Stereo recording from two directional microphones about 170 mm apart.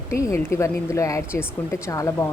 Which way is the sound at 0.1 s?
15° left (ahead or behind).